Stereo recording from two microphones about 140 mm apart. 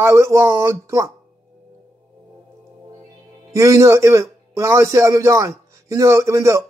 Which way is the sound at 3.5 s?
20° right (ahead or behind).